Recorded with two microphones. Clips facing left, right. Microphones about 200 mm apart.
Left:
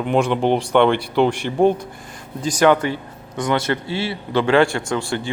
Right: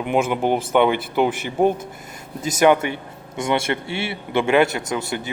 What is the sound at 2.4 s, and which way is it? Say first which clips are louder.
A man's voice: left 1 dB; 20° right (ahead or behind).